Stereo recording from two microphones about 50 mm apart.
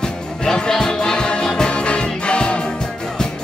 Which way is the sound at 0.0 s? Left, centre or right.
Centre.